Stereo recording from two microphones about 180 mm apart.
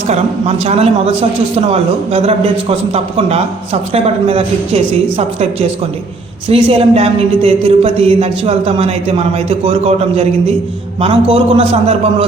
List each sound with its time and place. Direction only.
0.1 s a man's voice: 35° right (ahead or behind)